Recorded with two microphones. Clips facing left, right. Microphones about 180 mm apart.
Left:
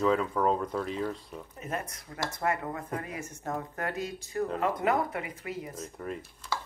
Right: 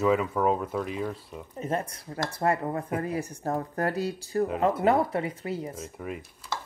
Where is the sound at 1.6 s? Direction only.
30° right (ahead or behind).